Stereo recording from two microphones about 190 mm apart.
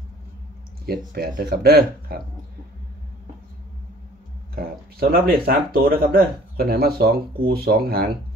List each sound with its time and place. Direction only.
0.8 s speech: 55° right (ahead or behind)
4.6 s speech: 50° right (ahead or behind)